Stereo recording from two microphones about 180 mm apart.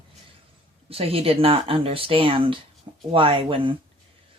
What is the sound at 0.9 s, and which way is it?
Speech, 30° right (ahead or behind).